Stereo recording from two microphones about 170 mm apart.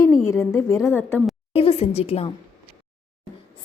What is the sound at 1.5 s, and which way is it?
Speech, 35° left (ahead or behind).